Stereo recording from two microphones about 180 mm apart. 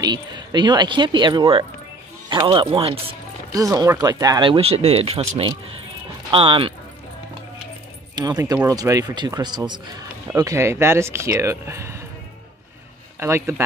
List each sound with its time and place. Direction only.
0.0 s speech: 25° right (ahead or behind)
3.5 s speech: 20° right (ahead or behind)
6.3 s speech: 30° right (ahead or behind)
8.2 s a man's voice: 20° right (ahead or behind)
13.2 s a man's voice: 15° right (ahead or behind)